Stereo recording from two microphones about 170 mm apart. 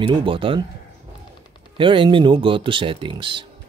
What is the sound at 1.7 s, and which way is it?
Speech, 30° right (ahead or behind).